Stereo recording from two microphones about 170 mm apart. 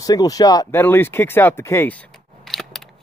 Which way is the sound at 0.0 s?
20° left (ahead or behind).